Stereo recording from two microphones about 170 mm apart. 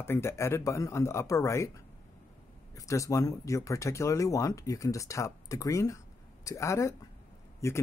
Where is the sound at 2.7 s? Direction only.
20° left (ahead or behind).